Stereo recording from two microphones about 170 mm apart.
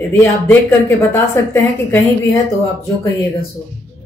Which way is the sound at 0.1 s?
15° left (ahead or behind).